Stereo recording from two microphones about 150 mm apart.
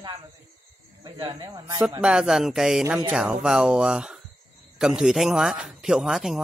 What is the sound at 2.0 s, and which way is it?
A man's voice, 5° right (ahead or behind).